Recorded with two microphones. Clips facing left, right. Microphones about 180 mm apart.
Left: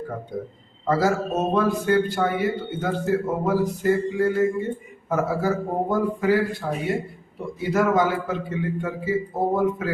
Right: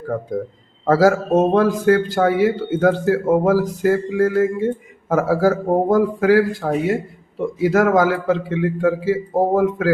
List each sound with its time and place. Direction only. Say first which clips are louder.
0.9 s speech: right 7 dB; 90° right